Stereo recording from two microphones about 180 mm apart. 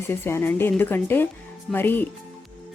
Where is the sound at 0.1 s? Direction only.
15° left (ahead or behind).